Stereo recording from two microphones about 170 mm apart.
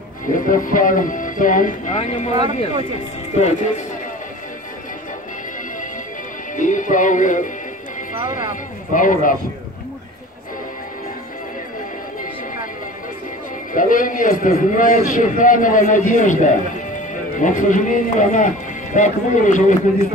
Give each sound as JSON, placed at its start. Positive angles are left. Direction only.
{"t": 0.3, "sound": "a man's voice", "side_deg": 55}
{"t": 2.3, "sound": "speech", "side_deg": -25}
{"t": 3.3, "sound": "a man's voice", "side_deg": 45}
{"t": 6.5, "sound": "speech", "side_deg": 50}
{"t": 8.9, "sound": "a man's voice", "side_deg": 50}
{"t": 13.7, "sound": "a man's voice", "side_deg": 55}